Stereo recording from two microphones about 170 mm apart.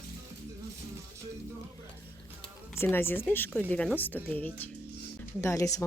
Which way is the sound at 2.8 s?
15° left (ahead or behind).